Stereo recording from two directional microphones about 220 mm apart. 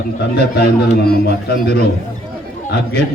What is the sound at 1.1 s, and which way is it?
A man's voice, 45° left (ahead or behind).